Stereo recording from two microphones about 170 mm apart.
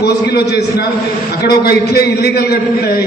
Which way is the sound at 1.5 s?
70° left (ahead or behind).